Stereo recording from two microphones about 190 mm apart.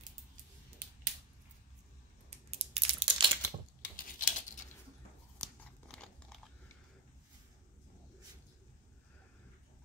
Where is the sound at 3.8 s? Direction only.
45° left (ahead or behind).